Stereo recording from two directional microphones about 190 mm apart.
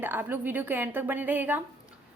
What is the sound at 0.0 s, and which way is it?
A woman's voice, 10° right (ahead or behind).